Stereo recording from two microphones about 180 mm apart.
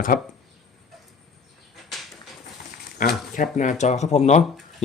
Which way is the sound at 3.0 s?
50° left (ahead or behind).